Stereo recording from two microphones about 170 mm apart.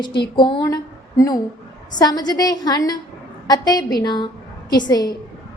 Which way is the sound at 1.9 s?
25° left (ahead or behind).